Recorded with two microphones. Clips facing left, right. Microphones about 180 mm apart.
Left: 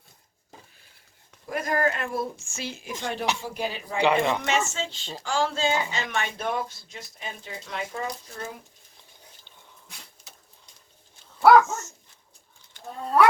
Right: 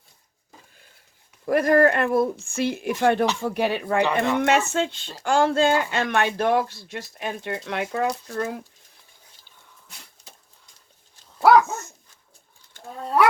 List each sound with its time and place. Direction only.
1.5 s speech: 60° right (ahead or behind)
4.0 s speech: 15° left (ahead or behind)
4.4 s speech: 60° right (ahead or behind)